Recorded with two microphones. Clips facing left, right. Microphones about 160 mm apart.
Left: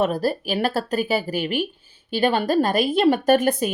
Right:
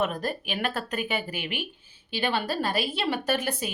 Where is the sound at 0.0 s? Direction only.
35° left (ahead or behind).